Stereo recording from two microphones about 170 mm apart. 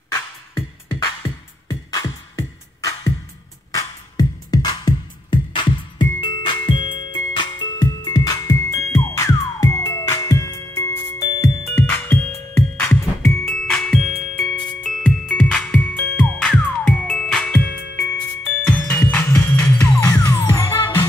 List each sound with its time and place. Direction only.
0.6 s music: 20° left (ahead or behind)
3.7 s music: 25° left (ahead or behind)
13.7 s music: centre (ahead or behind)